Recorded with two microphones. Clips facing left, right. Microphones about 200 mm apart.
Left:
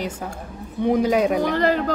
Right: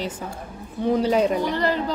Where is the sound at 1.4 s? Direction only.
50° left (ahead or behind).